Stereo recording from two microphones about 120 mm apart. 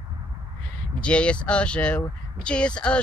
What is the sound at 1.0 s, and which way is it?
Speech, 10° left (ahead or behind).